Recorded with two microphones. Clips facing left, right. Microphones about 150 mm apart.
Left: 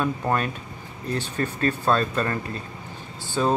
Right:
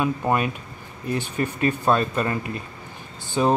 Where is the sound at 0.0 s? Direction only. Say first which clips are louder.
Right 2 dB; 10° right (ahead or behind).